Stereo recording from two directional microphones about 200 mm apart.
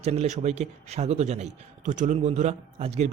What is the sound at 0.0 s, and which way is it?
Speech, 35° right (ahead or behind).